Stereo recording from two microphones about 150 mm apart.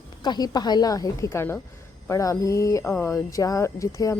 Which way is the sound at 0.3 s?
25° left (ahead or behind).